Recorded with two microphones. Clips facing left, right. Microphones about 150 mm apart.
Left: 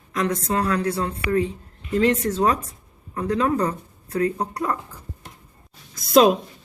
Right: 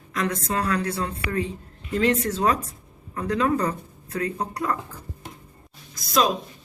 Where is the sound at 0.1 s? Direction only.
25° left (ahead or behind).